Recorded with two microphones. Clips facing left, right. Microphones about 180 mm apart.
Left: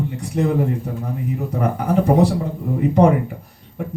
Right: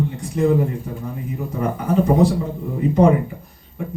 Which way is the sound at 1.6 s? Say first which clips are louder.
Even; 65° left (ahead or behind).